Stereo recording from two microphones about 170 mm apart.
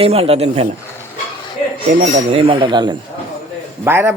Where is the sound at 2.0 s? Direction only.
35° right (ahead or behind).